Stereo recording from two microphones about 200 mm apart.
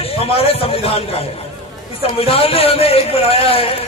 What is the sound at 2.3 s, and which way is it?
A man's voice, 30° left (ahead or behind).